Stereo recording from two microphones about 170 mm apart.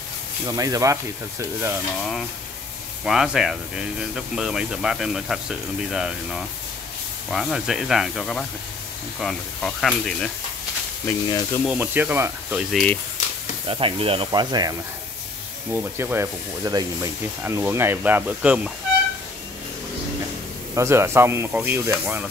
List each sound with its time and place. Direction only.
0.5 s speech: 20° right (ahead or behind)
3.1 s speech: 5° right (ahead or behind)
11.2 s speech: 20° left (ahead or behind)
11.7 s speech: 10° right (ahead or behind)
13.7 s speech: 30° right (ahead or behind)
15.7 s speech: 15° right (ahead or behind)
20.7 s speech: 15° right (ahead or behind)